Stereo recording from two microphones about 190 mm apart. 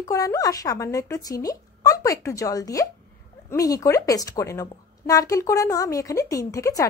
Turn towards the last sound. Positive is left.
turn(degrees=15)  # may be behind; listen again after turning